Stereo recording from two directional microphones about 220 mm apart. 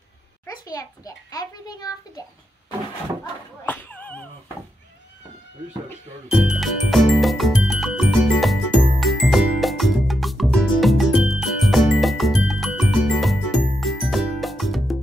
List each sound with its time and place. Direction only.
0.5 s a child's voice: 15° left (ahead or behind)
3.6 s speech: 5° left (ahead or behind)
6.3 s music: centre (ahead or behind)